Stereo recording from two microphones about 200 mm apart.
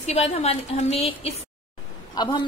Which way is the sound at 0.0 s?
35° left (ahead or behind).